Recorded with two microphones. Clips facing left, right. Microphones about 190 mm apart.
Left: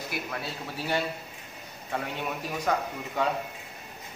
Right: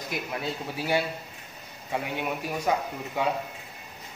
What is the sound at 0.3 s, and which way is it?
A man's voice, 15° right (ahead or behind).